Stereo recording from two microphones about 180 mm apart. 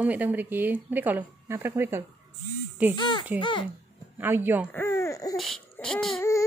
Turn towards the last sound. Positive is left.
turn(degrees=5)  # may be behind; listen again after turning